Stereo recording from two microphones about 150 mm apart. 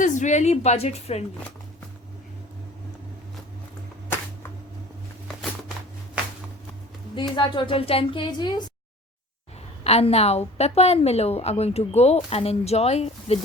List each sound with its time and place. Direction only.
0.0 s a woman's voice: 55° left (ahead or behind)
7.2 s a woman's voice: 30° left (ahead or behind)
9.8 s a woman's voice: 45° left (ahead or behind)